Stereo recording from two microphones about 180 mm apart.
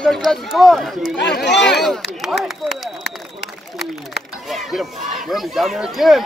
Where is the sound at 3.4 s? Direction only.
70° left (ahead or behind).